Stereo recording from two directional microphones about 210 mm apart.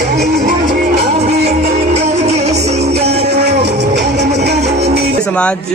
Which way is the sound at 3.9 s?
55° right (ahead or behind).